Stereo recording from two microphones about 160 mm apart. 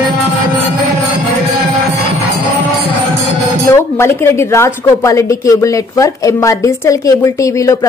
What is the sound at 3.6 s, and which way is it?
A woman's voice, 15° left (ahead or behind).